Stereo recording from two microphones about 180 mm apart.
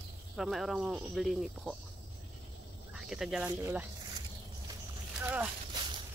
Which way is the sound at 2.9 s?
Centre (ahead or behind).